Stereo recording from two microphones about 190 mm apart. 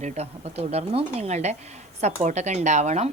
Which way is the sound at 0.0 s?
35° right (ahead or behind).